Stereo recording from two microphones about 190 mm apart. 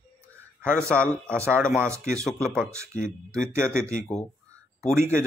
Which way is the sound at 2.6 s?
15° right (ahead or behind).